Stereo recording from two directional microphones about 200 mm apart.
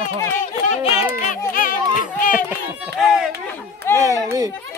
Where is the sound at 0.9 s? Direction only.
10° right (ahead or behind).